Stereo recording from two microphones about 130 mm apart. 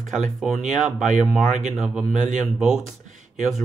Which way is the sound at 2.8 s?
75° right (ahead or behind).